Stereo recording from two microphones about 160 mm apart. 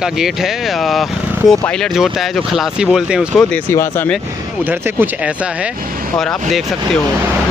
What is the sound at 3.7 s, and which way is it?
Speech, 15° left (ahead or behind).